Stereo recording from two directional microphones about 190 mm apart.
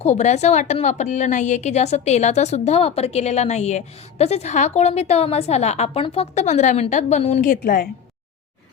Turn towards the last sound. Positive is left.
turn(degrees=50)  # may be behind; listen again after turning